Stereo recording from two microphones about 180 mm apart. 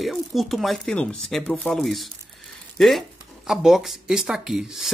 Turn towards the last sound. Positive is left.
turn(degrees=0)  # may be behind; listen again after turning